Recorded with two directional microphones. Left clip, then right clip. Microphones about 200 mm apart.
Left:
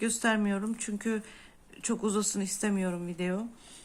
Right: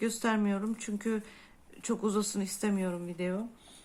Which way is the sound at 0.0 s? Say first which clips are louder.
Left 2 dB; 10° left (ahead or behind).